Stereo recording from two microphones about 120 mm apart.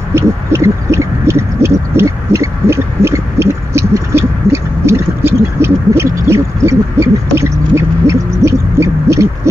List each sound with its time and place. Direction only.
0.1 s owl: 25° right (ahead or behind)